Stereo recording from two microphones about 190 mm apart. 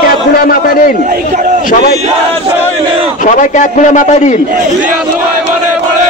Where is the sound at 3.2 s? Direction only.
40° left (ahead or behind).